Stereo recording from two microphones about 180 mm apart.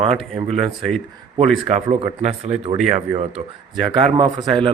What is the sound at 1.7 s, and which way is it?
Speech, 35° right (ahead or behind).